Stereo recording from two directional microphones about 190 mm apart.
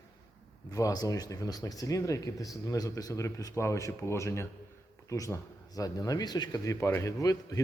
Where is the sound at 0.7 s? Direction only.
20° left (ahead or behind).